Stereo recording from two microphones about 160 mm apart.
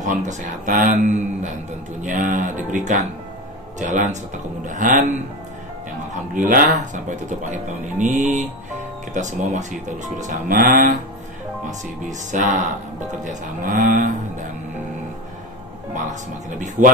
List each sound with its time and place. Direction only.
0.0 s speech: 50° right (ahead or behind)
6.3 s speech: 55° right (ahead or behind)
12.1 s speech: 50° right (ahead or behind)
13.2 s moo: 55° right (ahead or behind)
15.9 s speech: 55° right (ahead or behind)